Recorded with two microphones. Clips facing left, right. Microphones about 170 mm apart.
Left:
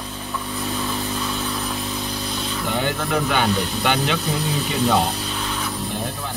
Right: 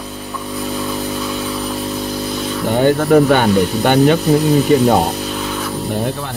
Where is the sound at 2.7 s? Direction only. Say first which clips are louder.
Right 12 dB; 50° right (ahead or behind).